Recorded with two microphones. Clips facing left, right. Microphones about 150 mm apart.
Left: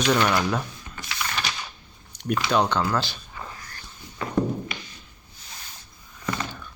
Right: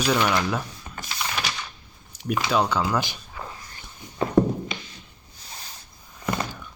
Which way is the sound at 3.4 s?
5° right (ahead or behind).